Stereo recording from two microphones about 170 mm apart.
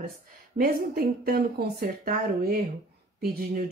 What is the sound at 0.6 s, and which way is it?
Speech, 60° right (ahead or behind).